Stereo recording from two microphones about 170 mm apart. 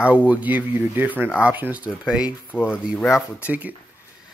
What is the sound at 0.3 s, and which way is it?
Speech, 10° right (ahead or behind).